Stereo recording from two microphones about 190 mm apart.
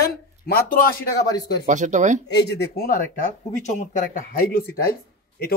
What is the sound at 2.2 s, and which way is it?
Speech, 65° left (ahead or behind).